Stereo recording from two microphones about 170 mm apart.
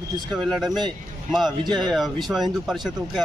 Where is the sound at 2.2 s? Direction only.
Centre (ahead or behind).